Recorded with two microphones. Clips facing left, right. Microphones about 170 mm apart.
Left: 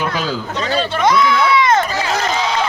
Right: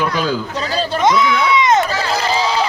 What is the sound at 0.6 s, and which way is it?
Speech, 35° right (ahead or behind).